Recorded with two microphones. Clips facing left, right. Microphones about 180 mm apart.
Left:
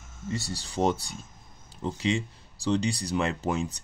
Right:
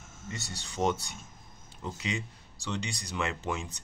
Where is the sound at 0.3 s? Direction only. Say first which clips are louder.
Left 8 dB; 35° left (ahead or behind).